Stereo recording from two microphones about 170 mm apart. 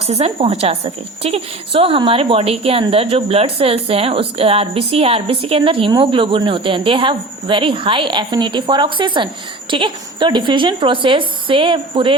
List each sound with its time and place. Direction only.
0.1 s a woman's voice: 35° right (ahead or behind)